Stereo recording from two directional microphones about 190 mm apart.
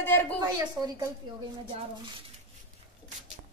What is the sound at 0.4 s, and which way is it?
Speech, 20° right (ahead or behind).